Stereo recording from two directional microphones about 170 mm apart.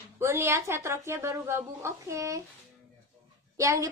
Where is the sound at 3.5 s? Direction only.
20° right (ahead or behind).